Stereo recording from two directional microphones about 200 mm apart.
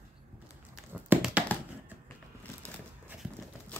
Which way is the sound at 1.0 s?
10° right (ahead or behind).